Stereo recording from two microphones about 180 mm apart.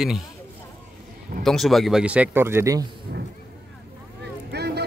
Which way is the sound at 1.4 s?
Centre (ahead or behind).